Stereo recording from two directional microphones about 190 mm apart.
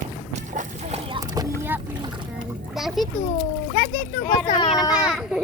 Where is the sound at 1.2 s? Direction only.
20° right (ahead or behind).